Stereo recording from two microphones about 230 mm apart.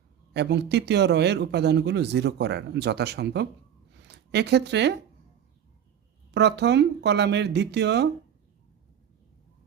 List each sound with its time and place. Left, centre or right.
0.3 s speech: right
6.3 s speech: right